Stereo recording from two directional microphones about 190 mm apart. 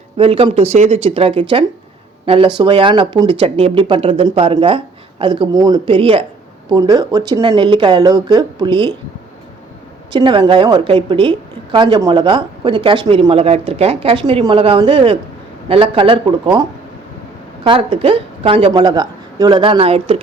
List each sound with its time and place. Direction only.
0.2 s a woman's voice: 30° right (ahead or behind)
10.1 s a woman's voice: 25° right (ahead or behind)